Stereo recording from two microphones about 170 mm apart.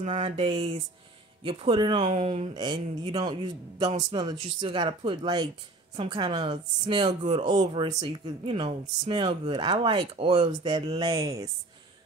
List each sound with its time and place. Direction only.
0.0 s speech: 30° right (ahead or behind)
2.0 s speech: 40° right (ahead or behind)
2.5 s speech: 25° right (ahead or behind)